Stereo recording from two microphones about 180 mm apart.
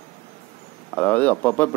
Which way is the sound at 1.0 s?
10° left (ahead or behind).